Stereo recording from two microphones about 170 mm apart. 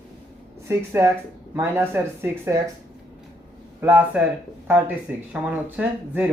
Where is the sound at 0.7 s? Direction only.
15° right (ahead or behind).